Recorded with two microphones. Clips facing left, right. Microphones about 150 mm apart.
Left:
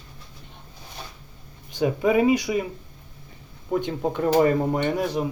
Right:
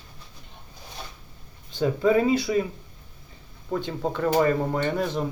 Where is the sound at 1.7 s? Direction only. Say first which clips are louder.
Even; 15° left (ahead or behind).